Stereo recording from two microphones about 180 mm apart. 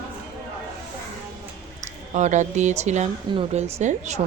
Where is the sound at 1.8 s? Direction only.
40° right (ahead or behind).